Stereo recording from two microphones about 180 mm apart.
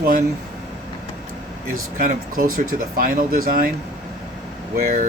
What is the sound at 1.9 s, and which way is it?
Speech, 50° right (ahead or behind).